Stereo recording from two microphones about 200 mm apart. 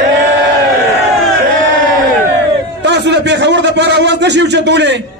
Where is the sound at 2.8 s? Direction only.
60° right (ahead or behind).